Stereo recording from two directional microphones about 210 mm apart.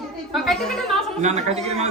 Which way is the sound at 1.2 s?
30° right (ahead or behind).